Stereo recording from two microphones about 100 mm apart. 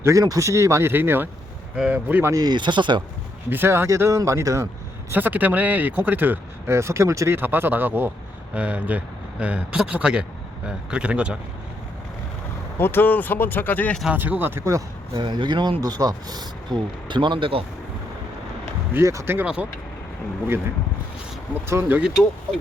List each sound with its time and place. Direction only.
0.0 s speech: 35° right (ahead or behind)
2.3 s speech: 45° right (ahead or behind)
3.5 s speech: 25° right (ahead or behind)
5.1 s speech: 20° right (ahead or behind)
12.8 s speech: 20° left (ahead or behind)
14.1 s speech: 15° right (ahead or behind); by 15.2 s 35° right (ahead or behind)
15.2 s speech: 50° right (ahead or behind)
15.8 s speech: 40° right (ahead or behind)
18.9 s speech: 30° right (ahead or behind)
21.5 s speech: 25° right (ahead or behind)